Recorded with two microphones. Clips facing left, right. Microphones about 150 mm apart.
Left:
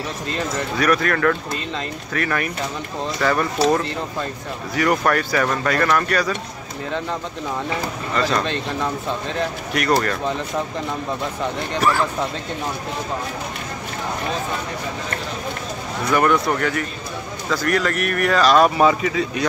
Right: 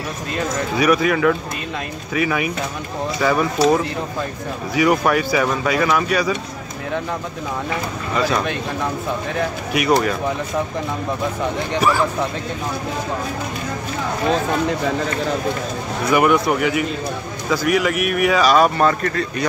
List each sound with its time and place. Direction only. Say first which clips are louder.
0.7 s speech: right 3 dB; 5° right (ahead or behind)
8.1 s speech: right 1 dB; 10° right (ahead or behind)
9.7 s speech: right 2 dB; 5° right (ahead or behind)
11.7 s speech: right 1 dB; 5° right (ahead or behind)
16.1 s speech: right 2 dB; 10° right (ahead or behind)